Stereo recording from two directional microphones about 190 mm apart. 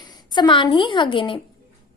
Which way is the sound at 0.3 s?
25° left (ahead or behind).